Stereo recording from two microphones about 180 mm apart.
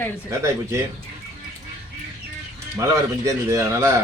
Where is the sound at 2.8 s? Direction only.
15° right (ahead or behind).